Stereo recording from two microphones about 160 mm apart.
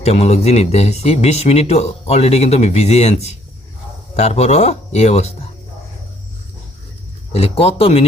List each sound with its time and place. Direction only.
0.0 s speech: 40° left (ahead or behind)
7.3 s speech: 40° left (ahead or behind)